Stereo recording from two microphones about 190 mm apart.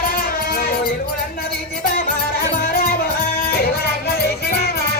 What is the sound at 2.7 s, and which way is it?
Music, 50° left (ahead or behind).